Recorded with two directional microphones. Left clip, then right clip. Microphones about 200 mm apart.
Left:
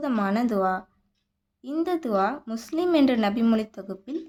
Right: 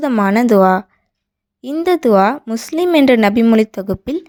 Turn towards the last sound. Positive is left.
turn(degrees=-40)  # may be behind; listen again after turning